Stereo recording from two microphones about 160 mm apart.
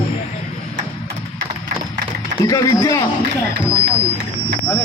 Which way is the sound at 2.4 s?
20° left (ahead or behind).